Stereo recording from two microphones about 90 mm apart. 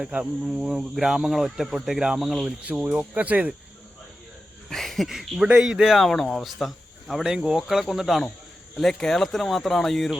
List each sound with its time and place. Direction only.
0.0 s speech: 15° right (ahead or behind)
4.7 s speech: centre (ahead or behind)